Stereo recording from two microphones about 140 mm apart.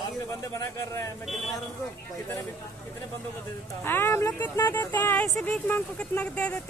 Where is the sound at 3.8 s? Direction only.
15° left (ahead or behind).